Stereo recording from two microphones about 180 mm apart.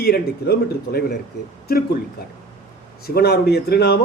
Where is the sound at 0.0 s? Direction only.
60° left (ahead or behind).